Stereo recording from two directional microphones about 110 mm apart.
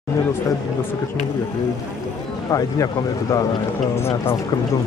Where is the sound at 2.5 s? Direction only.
30° left (ahead or behind).